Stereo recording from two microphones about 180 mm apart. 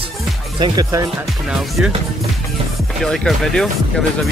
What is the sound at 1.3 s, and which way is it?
Speech, centre (ahead or behind).